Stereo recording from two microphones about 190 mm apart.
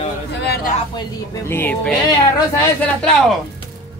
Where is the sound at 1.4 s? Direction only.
10° left (ahead or behind).